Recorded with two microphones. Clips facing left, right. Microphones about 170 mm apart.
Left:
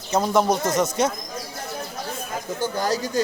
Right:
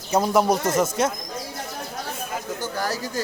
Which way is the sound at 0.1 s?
5° right (ahead or behind).